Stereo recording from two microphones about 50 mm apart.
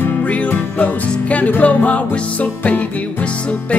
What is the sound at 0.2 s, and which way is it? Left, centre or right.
Music, left.